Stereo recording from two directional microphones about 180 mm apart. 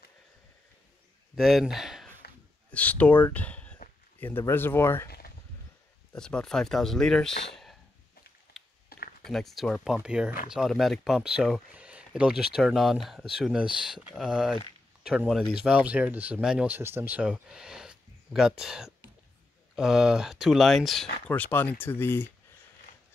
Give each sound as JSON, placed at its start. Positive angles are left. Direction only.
{"t": 1.3, "sound": "speech", "side_deg": 0}
{"t": 6.1, "sound": "speech", "side_deg": 5}
{"t": 8.5, "sound": "a sound", "side_deg": 65}
{"t": 9.2, "sound": "speech", "side_deg": 0}